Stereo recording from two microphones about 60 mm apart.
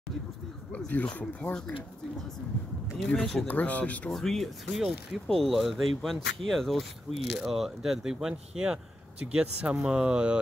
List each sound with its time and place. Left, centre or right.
0.8 s speech: left
3.2 s speech: centre
3.4 s speech: left
4.1 s speech: centre